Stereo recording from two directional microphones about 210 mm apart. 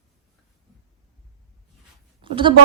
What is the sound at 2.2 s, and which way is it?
Speech, 25° right (ahead or behind).